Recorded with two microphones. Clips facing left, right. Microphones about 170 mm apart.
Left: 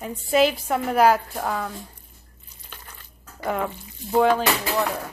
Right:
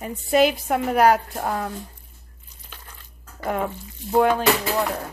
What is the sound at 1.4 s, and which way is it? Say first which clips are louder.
Speech: right 1 dB; 15° right (ahead or behind).